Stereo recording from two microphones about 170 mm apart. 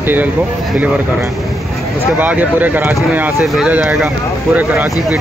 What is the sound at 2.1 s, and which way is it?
Speech, 10° right (ahead or behind).